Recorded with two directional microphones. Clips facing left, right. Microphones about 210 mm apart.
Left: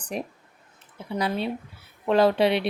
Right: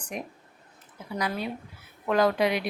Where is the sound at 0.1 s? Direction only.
35° left (ahead or behind).